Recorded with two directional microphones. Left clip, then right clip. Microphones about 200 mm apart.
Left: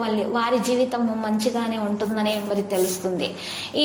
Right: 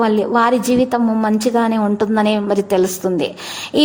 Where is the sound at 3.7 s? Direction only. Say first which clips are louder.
Right 8 dB; 50° right (ahead or behind).